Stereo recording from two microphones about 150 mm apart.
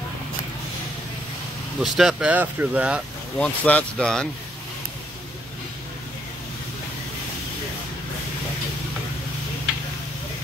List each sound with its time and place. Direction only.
1.8 s speech: 5° right (ahead or behind)
3.3 s speech: 10° left (ahead or behind)